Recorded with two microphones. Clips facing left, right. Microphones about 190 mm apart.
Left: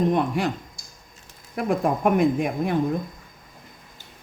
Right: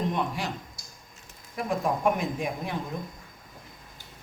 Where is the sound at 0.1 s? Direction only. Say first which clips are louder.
Left 8 dB; 55° left (ahead or behind).